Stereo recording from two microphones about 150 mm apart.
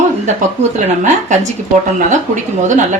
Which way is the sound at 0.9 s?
50° right (ahead or behind).